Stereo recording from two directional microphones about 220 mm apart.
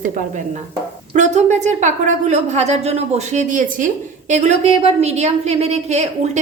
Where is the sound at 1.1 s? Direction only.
30° right (ahead or behind).